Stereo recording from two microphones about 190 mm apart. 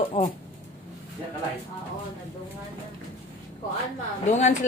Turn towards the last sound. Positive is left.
turn(degrees=40)  # may be behind; listen again after turning